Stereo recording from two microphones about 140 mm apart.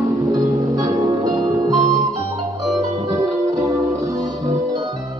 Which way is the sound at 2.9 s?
30° right (ahead or behind).